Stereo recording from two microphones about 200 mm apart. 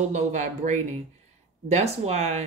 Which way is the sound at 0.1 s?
35° right (ahead or behind).